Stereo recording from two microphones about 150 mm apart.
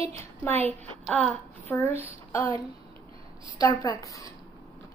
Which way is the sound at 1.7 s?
20° left (ahead or behind).